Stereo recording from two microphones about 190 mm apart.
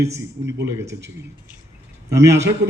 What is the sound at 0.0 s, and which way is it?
Speech, 15° right (ahead or behind).